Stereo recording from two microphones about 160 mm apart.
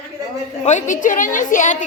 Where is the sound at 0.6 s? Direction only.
50° left (ahead or behind).